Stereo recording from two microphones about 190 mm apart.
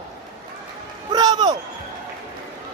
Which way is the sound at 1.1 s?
20° right (ahead or behind).